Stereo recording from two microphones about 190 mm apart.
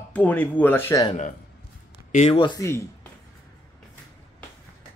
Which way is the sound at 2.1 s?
35° left (ahead or behind).